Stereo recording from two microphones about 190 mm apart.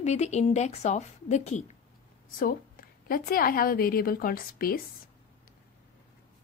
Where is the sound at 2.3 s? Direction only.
50° left (ahead or behind).